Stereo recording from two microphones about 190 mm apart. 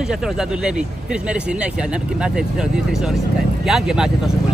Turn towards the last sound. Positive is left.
turn(degrees=-5)  # may be behind; listen again after turning